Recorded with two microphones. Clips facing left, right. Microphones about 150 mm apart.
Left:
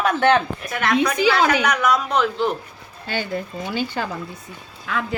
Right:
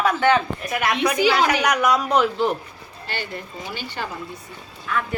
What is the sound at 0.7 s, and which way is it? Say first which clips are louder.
A woman's voice: left 1 dB; 10° right (ahead or behind).